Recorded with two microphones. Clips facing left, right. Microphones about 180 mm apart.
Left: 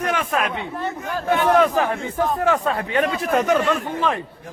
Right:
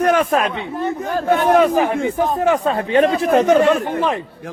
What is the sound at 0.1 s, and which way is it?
Speech, 45° right (ahead or behind).